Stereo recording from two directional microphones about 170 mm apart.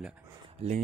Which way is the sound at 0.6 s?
35° right (ahead or behind).